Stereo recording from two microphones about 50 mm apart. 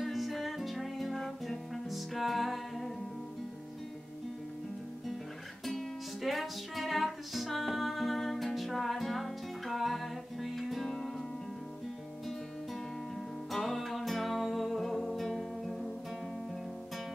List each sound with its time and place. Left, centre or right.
0.0 s music: centre
5.7 s music: centre
13.5 s music: centre